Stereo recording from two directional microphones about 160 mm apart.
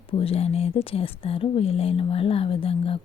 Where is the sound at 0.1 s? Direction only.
35° left (ahead or behind).